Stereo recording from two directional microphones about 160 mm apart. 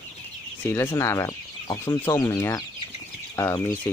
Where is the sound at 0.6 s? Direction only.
15° left (ahead or behind).